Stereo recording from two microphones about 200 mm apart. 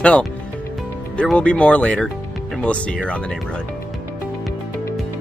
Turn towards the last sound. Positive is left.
turn(degrees=5)  # may be behind; listen again after turning